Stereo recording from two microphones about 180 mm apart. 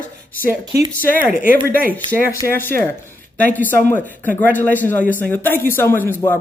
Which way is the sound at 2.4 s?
10° left (ahead or behind).